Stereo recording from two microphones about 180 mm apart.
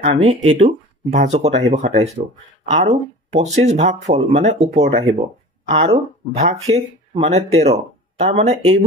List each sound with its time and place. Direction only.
0.0 s speech: 35° right (ahead or behind)
3.4 s speech: 40° right (ahead or behind)